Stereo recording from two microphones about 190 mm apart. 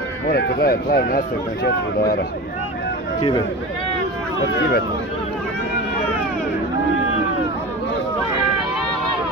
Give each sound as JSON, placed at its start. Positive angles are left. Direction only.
{"t": 0.3, "sound": "speech", "side_deg": 50}
{"t": 3.2, "sound": "speech", "side_deg": 25}